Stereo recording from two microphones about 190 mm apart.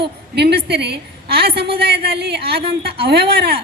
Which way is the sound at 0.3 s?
60° right (ahead or behind).